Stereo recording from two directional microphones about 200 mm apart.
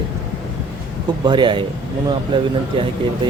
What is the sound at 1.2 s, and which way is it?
Speech, 25° right (ahead or behind).